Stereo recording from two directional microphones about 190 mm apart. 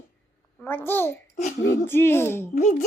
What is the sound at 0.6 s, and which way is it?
A child's voice, 10° left (ahead or behind).